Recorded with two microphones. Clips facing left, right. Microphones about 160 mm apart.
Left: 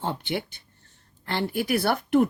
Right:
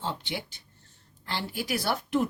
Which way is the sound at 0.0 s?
55° left (ahead or behind).